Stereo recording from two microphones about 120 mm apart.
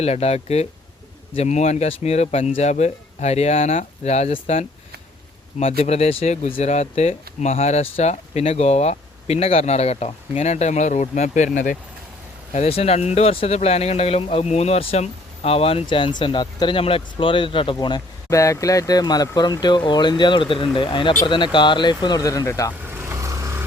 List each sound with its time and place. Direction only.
0.0 s speech: 60° left (ahead or behind); by 11.7 s 90° left
12.5 s speech: 60° left (ahead or behind); by 22.7 s 25° left (ahead or behind)
23.0 s vehicle: 25° right (ahead or behind)